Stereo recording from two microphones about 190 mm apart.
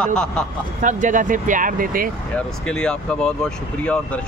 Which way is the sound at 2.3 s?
5° left (ahead or behind).